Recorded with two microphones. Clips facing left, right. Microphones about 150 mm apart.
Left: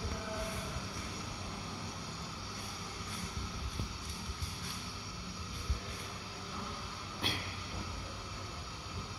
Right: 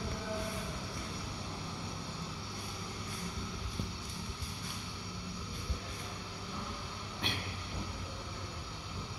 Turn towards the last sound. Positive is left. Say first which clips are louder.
# even
turn(degrees=5)  # may be behind; listen again after turning